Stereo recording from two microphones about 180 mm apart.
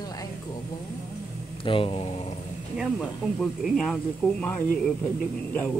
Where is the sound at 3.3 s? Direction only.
Centre (ahead or behind).